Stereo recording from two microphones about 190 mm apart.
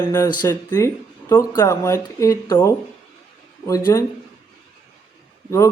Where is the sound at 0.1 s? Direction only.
15° left (ahead or behind).